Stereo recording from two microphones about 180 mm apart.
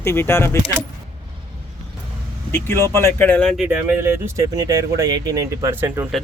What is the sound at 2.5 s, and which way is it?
Speech, 15° left (ahead or behind).